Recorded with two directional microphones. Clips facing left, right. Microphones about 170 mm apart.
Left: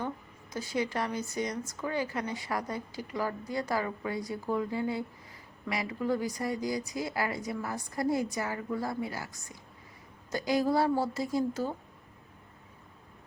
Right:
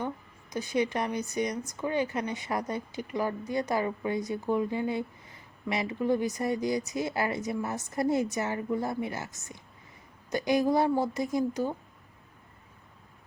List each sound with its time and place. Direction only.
0.5 s speech: 20° right (ahead or behind)